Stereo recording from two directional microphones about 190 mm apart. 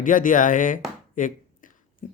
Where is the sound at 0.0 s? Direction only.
45° left (ahead or behind).